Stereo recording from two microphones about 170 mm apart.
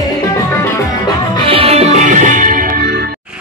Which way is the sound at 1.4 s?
35° right (ahead or behind).